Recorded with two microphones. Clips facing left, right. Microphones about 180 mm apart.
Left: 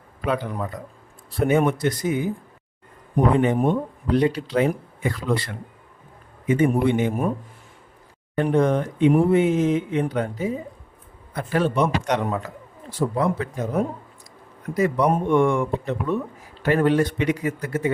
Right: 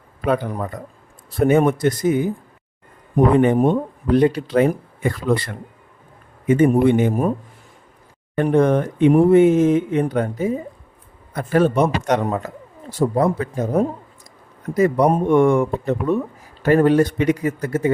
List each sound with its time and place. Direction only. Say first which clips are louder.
0.3 s speech: right 4 dB; 45° right (ahead or behind)
3.3 s speech: right 5 dB; 50° right (ahead or behind)
8.4 s speech: right 4 dB; 55° right (ahead or behind)